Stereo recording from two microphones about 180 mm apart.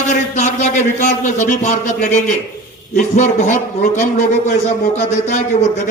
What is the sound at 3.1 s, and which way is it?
A man's voice, 40° left (ahead or behind).